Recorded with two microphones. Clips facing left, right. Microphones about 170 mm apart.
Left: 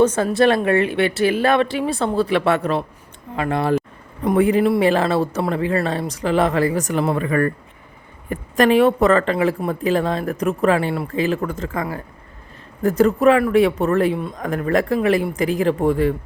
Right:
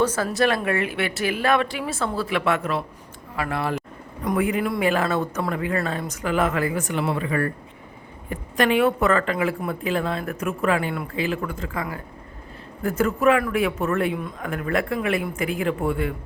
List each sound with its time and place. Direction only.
0.2 s speech: 25° left (ahead or behind); by 7.5 s 55° left (ahead or behind)
8.3 s speech: 40° left (ahead or behind)